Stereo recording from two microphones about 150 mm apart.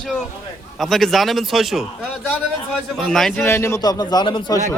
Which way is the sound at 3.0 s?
Centre (ahead or behind).